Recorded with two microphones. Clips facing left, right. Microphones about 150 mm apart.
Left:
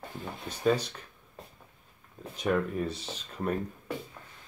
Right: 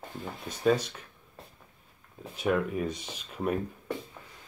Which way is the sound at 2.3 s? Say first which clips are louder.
Right 1 dB; 5° right (ahead or behind).